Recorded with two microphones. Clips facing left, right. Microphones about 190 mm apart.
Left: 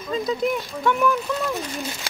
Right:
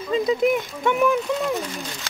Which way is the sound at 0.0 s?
25° right (ahead or behind).